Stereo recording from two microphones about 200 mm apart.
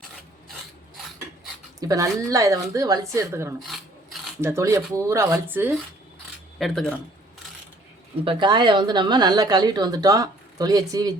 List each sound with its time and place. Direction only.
1.8 s a woman's voice: 15° right (ahead or behind)
6.6 s speech: 5° left (ahead or behind)
8.2 s speech: 25° right (ahead or behind)